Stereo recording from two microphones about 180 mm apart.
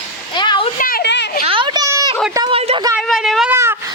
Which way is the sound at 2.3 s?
20° right (ahead or behind).